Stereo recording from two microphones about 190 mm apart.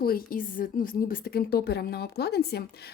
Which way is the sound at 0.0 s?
50° left (ahead or behind).